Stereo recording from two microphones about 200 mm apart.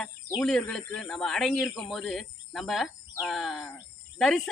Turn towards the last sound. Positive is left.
turn(degrees=0)  # may be behind; listen again after turning